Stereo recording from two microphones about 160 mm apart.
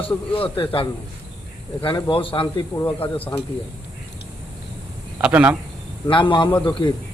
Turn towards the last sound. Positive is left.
turn(degrees=30)  # may be behind; listen again after turning